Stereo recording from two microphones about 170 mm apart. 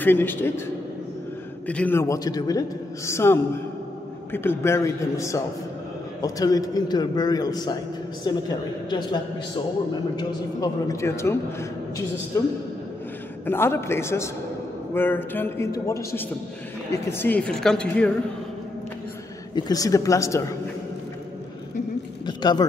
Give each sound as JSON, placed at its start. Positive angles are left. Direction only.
{"t": 0.0, "sound": "a man's voice", "side_deg": 10}
{"t": 1.7, "sound": "a man's voice", "side_deg": 10}
{"t": 10.1, "sound": "a man's voice", "side_deg": 20}
{"t": 13.5, "sound": "a man's voice", "side_deg": 15}
{"t": 19.5, "sound": "a man's voice", "side_deg": 20}
{"t": 22.2, "sound": "a sound", "side_deg": 25}